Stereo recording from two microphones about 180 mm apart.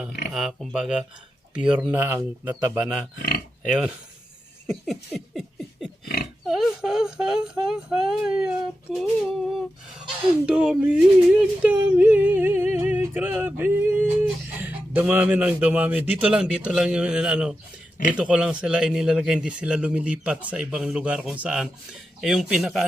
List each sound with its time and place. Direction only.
0.3 s speech: centre (ahead or behind)
1.5 s yodeling: 5° right (ahead or behind)
3.2 s speech: 60° left (ahead or behind)
3.7 s speech: 5° right (ahead or behind)
4.6 s a sound: centre (ahead or behind)
6.4 s speech: centre (ahead or behind)
10.4 s yodeling: 5° right (ahead or behind)
18.1 s speech: 5° right (ahead or behind)